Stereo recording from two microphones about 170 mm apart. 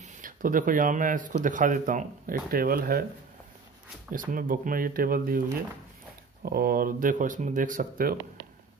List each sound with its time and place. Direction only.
0.0 s speech: 55° right (ahead or behind)
4.3 s speech: 55° right (ahead or behind)
6.4 s speech: 60° right (ahead or behind)